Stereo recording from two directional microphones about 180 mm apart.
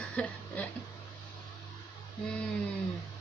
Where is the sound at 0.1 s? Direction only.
5° left (ahead or behind).